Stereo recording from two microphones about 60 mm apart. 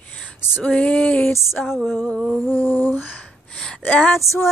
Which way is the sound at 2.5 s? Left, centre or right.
Left.